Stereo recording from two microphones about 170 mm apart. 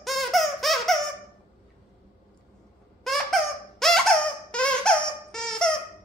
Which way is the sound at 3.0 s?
Centre (ahead or behind).